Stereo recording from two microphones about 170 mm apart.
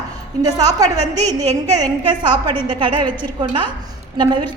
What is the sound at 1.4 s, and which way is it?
A woman's voice, 20° right (ahead or behind).